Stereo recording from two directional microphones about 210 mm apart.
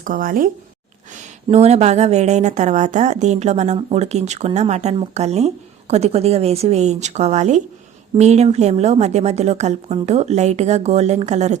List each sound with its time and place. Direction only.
0.0 s speech: 40° right (ahead or behind)
1.1 s speech: 30° right (ahead or behind)